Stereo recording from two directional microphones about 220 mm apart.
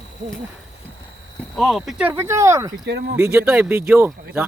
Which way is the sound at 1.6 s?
Centre (ahead or behind).